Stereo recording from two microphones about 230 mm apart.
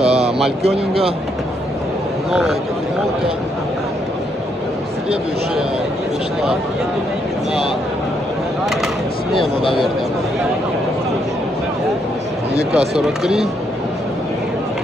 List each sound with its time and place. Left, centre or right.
0.0 s a sound: right
0.6 s speech: right
8.6 s speech: centre
12.7 s speech: centre